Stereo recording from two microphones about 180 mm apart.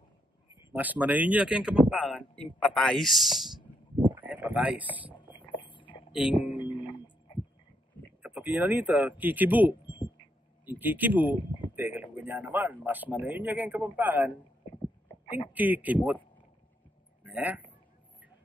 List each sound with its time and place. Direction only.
0.7 s a man's voice: 10° right (ahead or behind)
4.0 s a sound: 10° right (ahead or behind)
5.1 s a sound: 25° left (ahead or behind)
6.1 s a man's voice: 5° right (ahead or behind)
6.5 s music: 25° left (ahead or behind)
8.2 s a man's voice: 10° right (ahead or behind)
15.2 s speech: 25° left (ahead or behind)
15.5 s a man's voice: 10° right (ahead or behind)
17.2 s a sound: 10° right (ahead or behind)